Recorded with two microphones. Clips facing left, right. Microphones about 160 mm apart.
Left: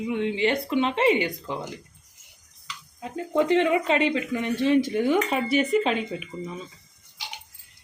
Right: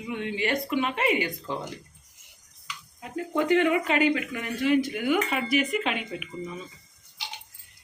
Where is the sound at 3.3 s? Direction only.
25° left (ahead or behind).